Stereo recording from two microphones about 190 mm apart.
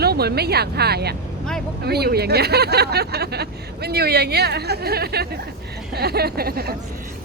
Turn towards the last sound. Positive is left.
turn(degrees=-55)  # may be behind; listen again after turning